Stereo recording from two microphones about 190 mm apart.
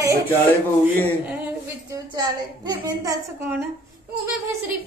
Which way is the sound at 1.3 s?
15° right (ahead or behind).